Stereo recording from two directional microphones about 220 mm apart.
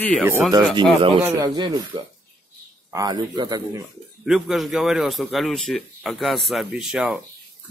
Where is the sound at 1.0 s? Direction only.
20° right (ahead or behind).